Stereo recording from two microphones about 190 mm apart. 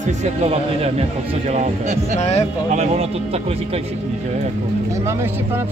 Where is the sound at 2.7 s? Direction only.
35° right (ahead or behind).